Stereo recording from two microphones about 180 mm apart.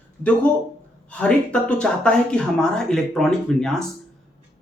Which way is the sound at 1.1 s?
5° left (ahead or behind).